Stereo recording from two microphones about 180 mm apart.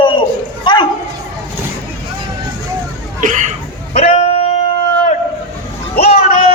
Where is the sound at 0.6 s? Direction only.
25° left (ahead or behind).